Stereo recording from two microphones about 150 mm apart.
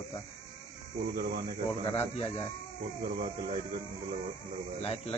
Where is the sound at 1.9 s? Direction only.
45° left (ahead or behind).